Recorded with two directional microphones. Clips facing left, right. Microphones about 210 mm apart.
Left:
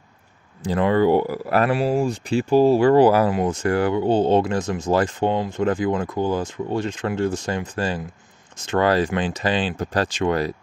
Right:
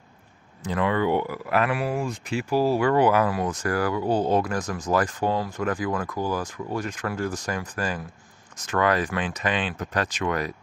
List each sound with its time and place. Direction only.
0.7 s speech: 35° left (ahead or behind)